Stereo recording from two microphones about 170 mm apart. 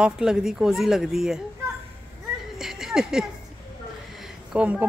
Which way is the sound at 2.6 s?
Centre (ahead or behind).